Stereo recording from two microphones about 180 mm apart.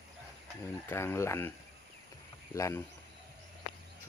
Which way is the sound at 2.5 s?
15° left (ahead or behind).